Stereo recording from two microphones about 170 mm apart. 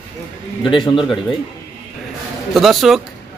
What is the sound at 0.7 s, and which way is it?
Speech, 30° left (ahead or behind).